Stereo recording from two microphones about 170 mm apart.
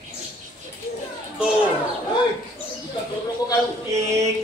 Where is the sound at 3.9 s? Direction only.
15° right (ahead or behind).